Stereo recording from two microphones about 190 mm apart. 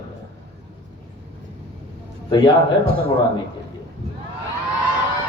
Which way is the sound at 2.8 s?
50° right (ahead or behind).